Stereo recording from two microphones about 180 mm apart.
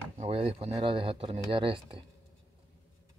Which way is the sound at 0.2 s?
35° right (ahead or behind).